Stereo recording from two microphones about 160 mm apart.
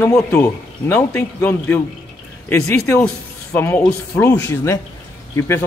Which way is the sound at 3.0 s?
5° left (ahead or behind).